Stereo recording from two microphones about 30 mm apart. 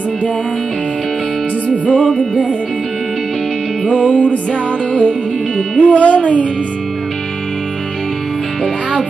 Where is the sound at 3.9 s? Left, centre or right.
Left.